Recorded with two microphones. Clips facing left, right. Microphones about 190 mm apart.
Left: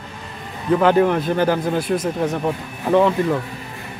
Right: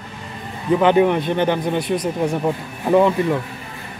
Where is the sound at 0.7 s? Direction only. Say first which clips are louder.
Right 1 dB; centre (ahead or behind).